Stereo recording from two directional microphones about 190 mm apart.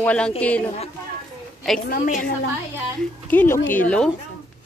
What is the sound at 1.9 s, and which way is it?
Speech, 45° left (ahead or behind).